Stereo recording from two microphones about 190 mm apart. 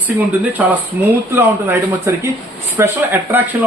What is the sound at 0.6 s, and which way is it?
A man's voice, 10° right (ahead or behind).